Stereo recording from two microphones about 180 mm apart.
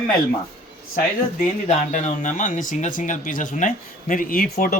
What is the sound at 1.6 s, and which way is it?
Speech, 40° left (ahead or behind).